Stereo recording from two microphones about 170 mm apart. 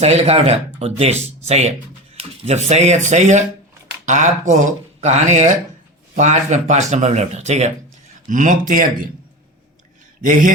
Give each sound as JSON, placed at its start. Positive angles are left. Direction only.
{"t": 0.0, "sound": "speech", "side_deg": -40}